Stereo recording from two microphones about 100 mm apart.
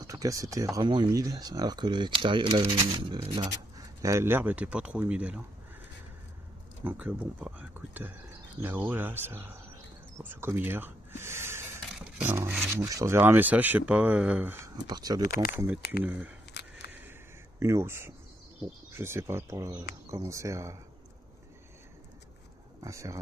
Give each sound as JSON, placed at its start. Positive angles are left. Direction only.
{"t": 0.0, "sound": "speech", "side_deg": -35}
{"t": 3.4, "sound": "speech", "side_deg": -35}
{"t": 6.8, "sound": "speech", "side_deg": -15}
{"t": 12.0, "sound": "a sound", "side_deg": -15}
{"t": 12.4, "sound": "speech", "side_deg": -20}
{"t": 12.8, "sound": "speech", "side_deg": -30}
{"t": 13.2, "sound": "speech", "side_deg": -20}
{"t": 14.9, "sound": "speech", "side_deg": -40}
{"t": 15.5, "sound": "speech", "side_deg": -20}
{"t": 17.6, "sound": "speech", "side_deg": -30}
{"t": 22.8, "sound": "speech", "side_deg": -30}